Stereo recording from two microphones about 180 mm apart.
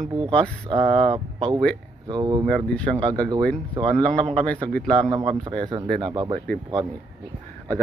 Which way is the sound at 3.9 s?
5° left (ahead or behind).